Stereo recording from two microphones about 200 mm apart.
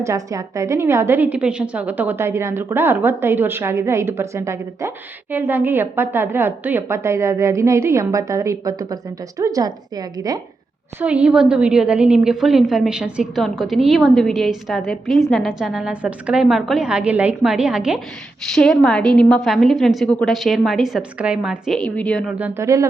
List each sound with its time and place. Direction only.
0.0 s a woman's voice: 15° right (ahead or behind)
11.0 s a woman's voice: 5° right (ahead or behind)
22.4 s a woman's voice: 10° right (ahead or behind)